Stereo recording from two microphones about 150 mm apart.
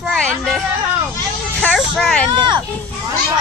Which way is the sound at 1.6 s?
5° left (ahead or behind).